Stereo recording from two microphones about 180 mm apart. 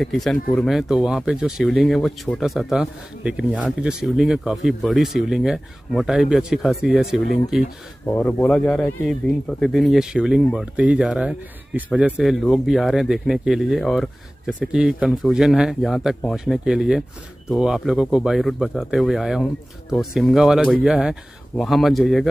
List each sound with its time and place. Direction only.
0.0 s speech: centre (ahead or behind)
8.0 s speech: 15° left (ahead or behind)
8.3 s speech: 5° left (ahead or behind)